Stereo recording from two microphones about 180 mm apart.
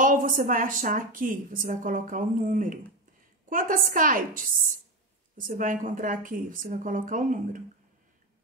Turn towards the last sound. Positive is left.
turn(degrees=-45)  # may be behind; listen again after turning